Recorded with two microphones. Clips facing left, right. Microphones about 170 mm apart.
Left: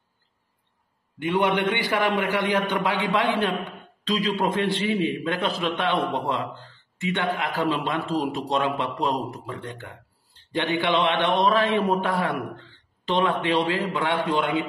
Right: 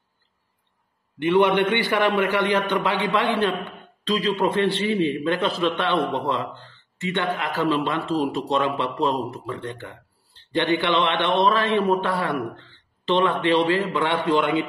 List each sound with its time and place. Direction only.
1.6 s a man's voice: 60° right (ahead or behind)
1.9 s a man's voice: 15° left (ahead or behind)